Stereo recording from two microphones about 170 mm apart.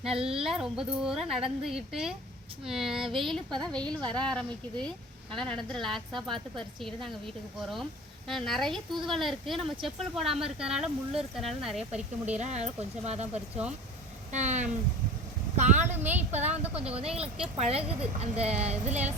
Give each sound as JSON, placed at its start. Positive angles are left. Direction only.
{"t": 0.1, "sound": "speech", "side_deg": -35}
{"t": 0.4, "sound": "speech", "side_deg": -5}
{"t": 8.3, "sound": "speech", "side_deg": 0}
{"t": 12.4, "sound": "speech", "side_deg": -40}
{"t": 14.3, "sound": "speech", "side_deg": -45}
{"t": 15.9, "sound": "speech", "side_deg": -10}
{"t": 16.3, "sound": "speech", "side_deg": -40}